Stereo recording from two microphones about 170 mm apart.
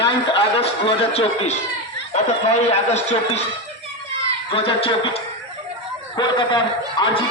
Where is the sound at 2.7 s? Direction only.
40° left (ahead or behind).